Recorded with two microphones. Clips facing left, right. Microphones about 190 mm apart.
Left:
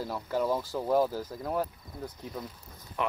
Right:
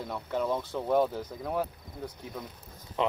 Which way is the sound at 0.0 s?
5° left (ahead or behind).